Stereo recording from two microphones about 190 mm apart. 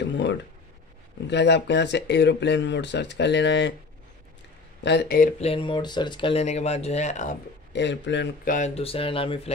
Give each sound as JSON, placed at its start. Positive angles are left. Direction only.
{"t": 0.0, "sound": "a sound", "side_deg": 70}
{"t": 1.3, "sound": "speech", "side_deg": 65}
{"t": 4.8, "sound": "speech", "side_deg": 60}
{"t": 5.4, "sound": "speech", "side_deg": 30}
{"t": 7.7, "sound": "speech", "side_deg": 70}
{"t": 8.5, "sound": "speech", "side_deg": 40}